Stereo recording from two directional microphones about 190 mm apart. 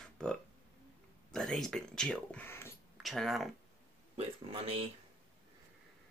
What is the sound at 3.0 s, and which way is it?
Speech, centre (ahead or behind).